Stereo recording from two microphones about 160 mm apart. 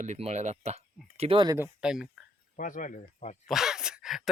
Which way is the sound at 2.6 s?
55° left (ahead or behind).